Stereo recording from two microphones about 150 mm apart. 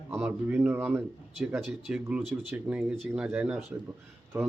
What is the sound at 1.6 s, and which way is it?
A man's voice, centre (ahead or behind).